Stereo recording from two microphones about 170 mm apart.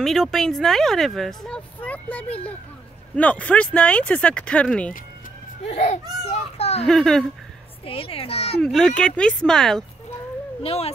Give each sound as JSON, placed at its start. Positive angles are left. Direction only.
{"t": 0.0, "sound": "speech", "side_deg": 0}
{"t": 5.7, "sound": "a woman's voice", "side_deg": 40}
{"t": 6.6, "sound": "a sound", "side_deg": 35}
{"t": 6.9, "sound": "speech", "side_deg": 0}
{"t": 7.8, "sound": "a woman's voice", "side_deg": 35}
{"t": 8.7, "sound": "speech", "side_deg": 5}
{"t": 10.6, "sound": "a woman's voice", "side_deg": 35}